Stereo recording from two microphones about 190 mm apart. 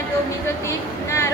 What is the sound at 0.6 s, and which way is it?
Speech, 15° left (ahead or behind).